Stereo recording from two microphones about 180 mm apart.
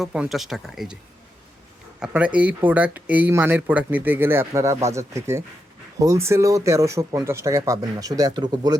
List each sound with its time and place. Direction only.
0.0 s speech: 5° right (ahead or behind)
2.0 s speech: 5° right (ahead or behind)